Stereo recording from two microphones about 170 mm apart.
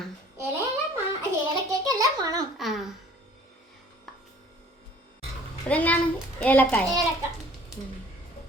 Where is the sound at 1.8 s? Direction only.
20° right (ahead or behind).